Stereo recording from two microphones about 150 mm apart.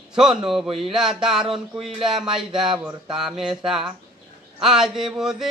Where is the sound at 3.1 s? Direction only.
5° right (ahead or behind).